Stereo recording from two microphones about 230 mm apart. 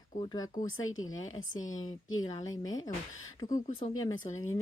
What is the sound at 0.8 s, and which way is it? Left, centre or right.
Speech, left.